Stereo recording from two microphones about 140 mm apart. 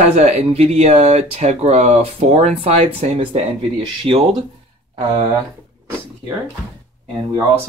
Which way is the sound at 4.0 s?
40° right (ahead or behind).